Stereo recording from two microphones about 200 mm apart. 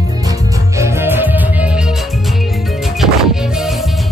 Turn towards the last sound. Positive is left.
turn(degrees=0)  # may be behind; listen again after turning